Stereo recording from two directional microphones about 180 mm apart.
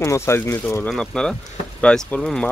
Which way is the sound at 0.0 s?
15° left (ahead or behind).